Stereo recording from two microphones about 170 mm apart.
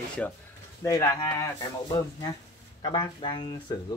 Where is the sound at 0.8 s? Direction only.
20° left (ahead or behind).